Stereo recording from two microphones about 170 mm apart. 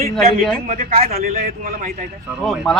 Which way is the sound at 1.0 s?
60° right (ahead or behind).